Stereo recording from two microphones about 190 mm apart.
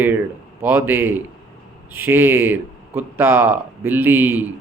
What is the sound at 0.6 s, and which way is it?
Speech, 10° right (ahead or behind).